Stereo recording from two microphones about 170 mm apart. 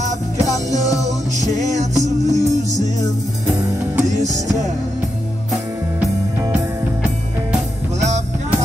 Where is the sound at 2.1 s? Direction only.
45° right (ahead or behind).